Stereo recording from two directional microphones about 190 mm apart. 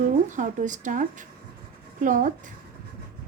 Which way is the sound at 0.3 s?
40° right (ahead or behind).